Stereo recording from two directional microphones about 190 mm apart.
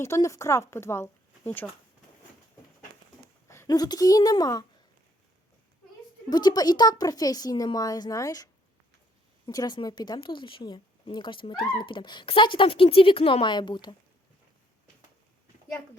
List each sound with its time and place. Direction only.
0.0 s speech: 15° left (ahead or behind)
3.5 s speech: 15° left (ahead or behind)
6.3 s speech: 20° left (ahead or behind)
9.5 s speech: 20° left (ahead or behind)